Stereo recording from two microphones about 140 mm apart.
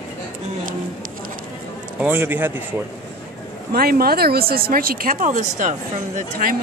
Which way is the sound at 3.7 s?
90° right.